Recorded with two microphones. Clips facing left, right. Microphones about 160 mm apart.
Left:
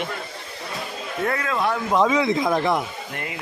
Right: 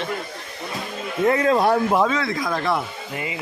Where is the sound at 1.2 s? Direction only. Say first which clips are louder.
Right 6 dB; 25° right (ahead or behind).